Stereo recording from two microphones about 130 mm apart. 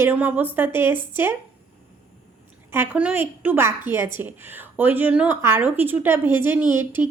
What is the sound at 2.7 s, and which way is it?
A woman's voice, 15° right (ahead or behind).